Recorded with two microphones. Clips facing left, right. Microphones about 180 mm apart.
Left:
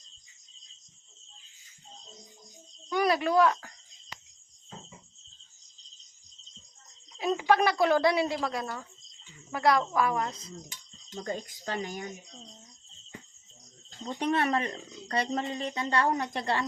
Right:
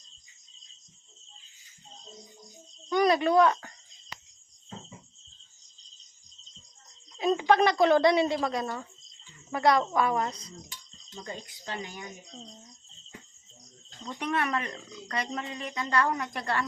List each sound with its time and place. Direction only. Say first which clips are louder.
2.9 s speech: right 3 dB; 5° left (ahead or behind)
7.3 s a woman's voice: right 1 dB; 5° left (ahead or behind)
11.1 s speech: left 5 dB; 45° left (ahead or behind)
14.0 s speech: left 3 dB; 35° left (ahead or behind)